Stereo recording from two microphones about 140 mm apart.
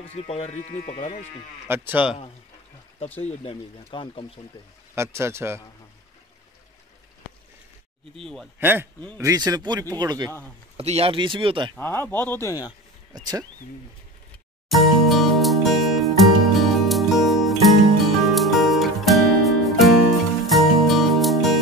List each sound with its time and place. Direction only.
0.1 s speech: 45° left (ahead or behind)
1.7 s speech: 15° right (ahead or behind)
3.2 s speech: 45° left (ahead or behind)
4.9 s speech: 20° right (ahead or behind)
8.5 s speech: 15° right (ahead or behind)
9.2 s speech: 25° right (ahead or behind)
10.8 s speech: 45° right (ahead or behind)
11.8 s speech: 15° left (ahead or behind)
12.4 s speech: 25° left (ahead or behind)
14.7 s music: centre (ahead or behind)